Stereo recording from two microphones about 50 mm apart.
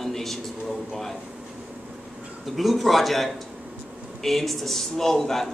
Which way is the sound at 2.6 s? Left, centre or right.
Centre.